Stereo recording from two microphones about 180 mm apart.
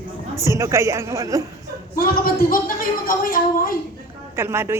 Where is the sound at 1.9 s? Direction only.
55° left (ahead or behind).